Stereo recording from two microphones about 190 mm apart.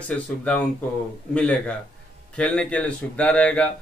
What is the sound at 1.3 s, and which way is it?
Speech, 5° left (ahead or behind).